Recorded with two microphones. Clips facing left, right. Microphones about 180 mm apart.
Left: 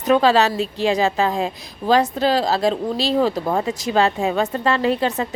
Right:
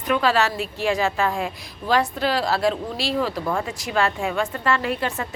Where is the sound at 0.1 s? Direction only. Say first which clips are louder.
Left 5 dB; 25° left (ahead or behind).